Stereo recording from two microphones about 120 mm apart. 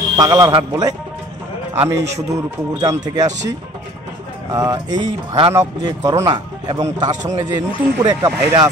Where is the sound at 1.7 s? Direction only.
25° right (ahead or behind).